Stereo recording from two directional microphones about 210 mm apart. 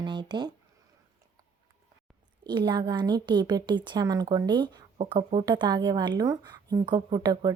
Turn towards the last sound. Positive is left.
turn(degrees=-20)  # may be behind; listen again after turning